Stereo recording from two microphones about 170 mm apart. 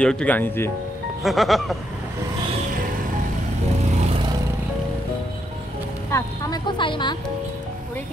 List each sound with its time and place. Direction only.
0.0 s speech: 5° left (ahead or behind)
1.2 s speech: centre (ahead or behind)
6.1 s speech: 20° left (ahead or behind)